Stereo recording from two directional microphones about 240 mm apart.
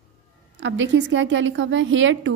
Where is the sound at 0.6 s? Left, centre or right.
Right.